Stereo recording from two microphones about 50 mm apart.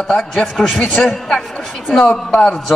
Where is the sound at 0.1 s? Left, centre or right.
Centre.